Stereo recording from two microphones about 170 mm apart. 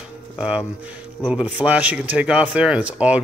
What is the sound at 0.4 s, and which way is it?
Speech, 5° right (ahead or behind).